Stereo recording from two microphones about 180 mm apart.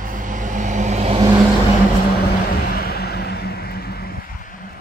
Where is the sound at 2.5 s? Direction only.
60° left (ahead or behind).